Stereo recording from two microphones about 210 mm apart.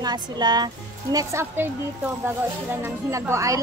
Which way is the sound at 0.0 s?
20° right (ahead or behind).